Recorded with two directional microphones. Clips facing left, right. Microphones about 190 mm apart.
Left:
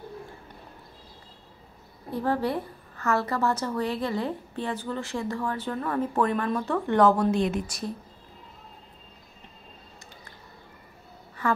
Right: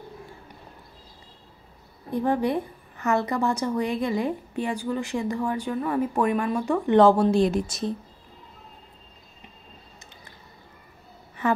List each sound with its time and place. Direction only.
2.0 s a woman's voice: 15° right (ahead or behind)
7.0 s a woman's voice: 30° right (ahead or behind)